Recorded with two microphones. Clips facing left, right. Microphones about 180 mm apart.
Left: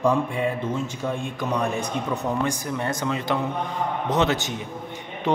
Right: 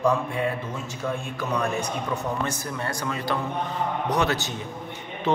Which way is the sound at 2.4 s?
15° left (ahead or behind).